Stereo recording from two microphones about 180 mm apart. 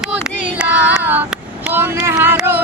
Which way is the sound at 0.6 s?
10° right (ahead or behind).